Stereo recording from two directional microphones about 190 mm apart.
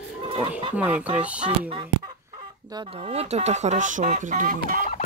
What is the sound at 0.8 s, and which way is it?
Speech, 5° right (ahead or behind).